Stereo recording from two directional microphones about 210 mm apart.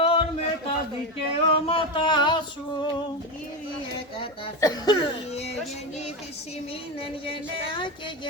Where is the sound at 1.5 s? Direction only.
25° left (ahead or behind).